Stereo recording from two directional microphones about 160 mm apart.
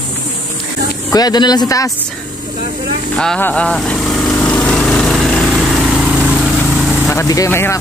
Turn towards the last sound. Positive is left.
turn(degrees=15)  # may be behind; listen again after turning